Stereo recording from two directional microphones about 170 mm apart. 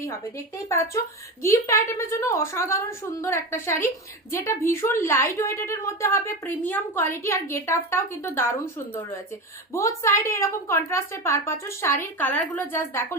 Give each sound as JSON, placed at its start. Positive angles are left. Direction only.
{"t": 0.7, "sound": "a woman's voice", "side_deg": 15}